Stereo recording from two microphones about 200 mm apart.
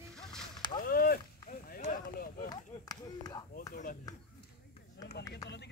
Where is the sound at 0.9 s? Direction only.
45° left (ahead or behind).